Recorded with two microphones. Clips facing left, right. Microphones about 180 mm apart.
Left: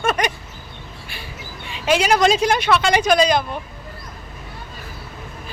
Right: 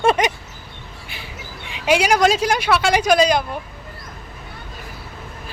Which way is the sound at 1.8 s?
10° right (ahead or behind).